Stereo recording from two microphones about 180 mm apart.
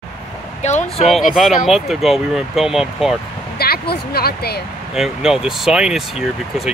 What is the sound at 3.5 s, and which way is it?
Speech, 60° left (ahead or behind).